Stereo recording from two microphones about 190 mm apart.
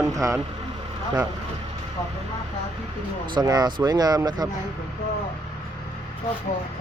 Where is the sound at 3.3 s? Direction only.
20° right (ahead or behind).